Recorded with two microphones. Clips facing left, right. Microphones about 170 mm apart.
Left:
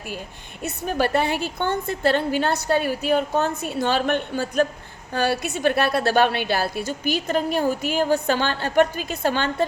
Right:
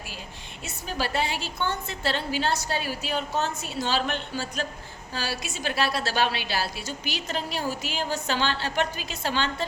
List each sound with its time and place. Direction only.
0.6 s a woman's voice: 55° left (ahead or behind)